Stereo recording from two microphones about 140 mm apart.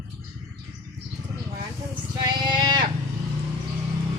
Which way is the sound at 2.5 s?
30° right (ahead or behind).